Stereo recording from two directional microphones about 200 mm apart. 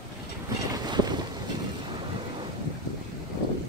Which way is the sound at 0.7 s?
20° right (ahead or behind).